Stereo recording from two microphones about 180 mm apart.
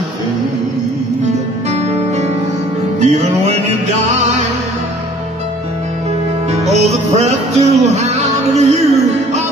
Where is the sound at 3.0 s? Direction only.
40° right (ahead or behind).